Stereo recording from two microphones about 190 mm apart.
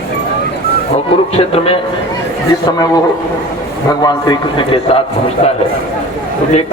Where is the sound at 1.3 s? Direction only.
30° left (ahead or behind).